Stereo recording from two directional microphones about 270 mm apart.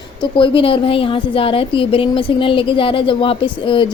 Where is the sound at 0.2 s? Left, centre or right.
Centre.